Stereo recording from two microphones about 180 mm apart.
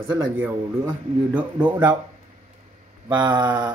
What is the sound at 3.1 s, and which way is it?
Speech, 25° right (ahead or behind).